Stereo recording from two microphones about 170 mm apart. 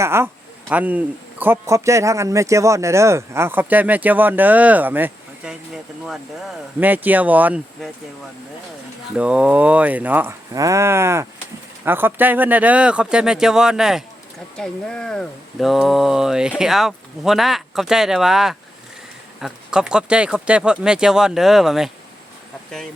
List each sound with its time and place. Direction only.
0.0 s speech: 15° right (ahead or behind)
9.1 s speech: 5° right (ahead or behind)